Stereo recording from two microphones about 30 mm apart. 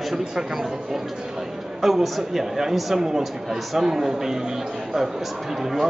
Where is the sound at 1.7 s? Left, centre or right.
Centre.